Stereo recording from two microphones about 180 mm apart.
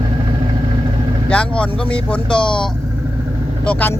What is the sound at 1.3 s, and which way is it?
Vehicle, 5° left (ahead or behind).